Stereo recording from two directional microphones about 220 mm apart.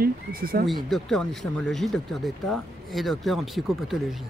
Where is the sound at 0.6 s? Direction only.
Centre (ahead or behind).